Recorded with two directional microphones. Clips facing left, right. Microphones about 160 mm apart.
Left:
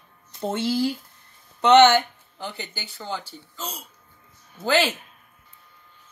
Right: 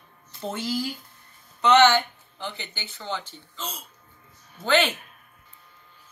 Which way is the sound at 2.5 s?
45° left (ahead or behind).